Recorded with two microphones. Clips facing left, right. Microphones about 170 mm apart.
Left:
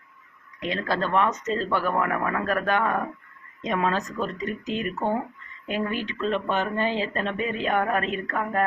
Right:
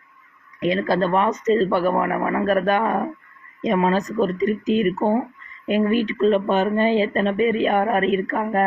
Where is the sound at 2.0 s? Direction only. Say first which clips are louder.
Right 5 dB; 25° right (ahead or behind).